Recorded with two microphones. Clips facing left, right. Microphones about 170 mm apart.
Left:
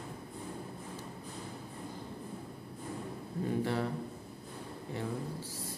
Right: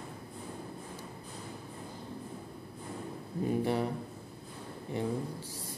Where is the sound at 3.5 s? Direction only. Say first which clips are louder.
Right 3 dB; 15° right (ahead or behind).